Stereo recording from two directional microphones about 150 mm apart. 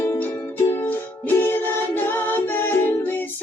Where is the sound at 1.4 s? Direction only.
15° left (ahead or behind).